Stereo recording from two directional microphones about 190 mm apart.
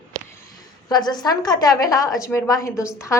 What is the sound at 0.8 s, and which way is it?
A woman's voice, 20° left (ahead or behind).